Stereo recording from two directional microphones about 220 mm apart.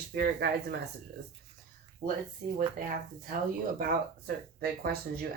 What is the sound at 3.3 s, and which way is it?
Speech, 40° right (ahead or behind).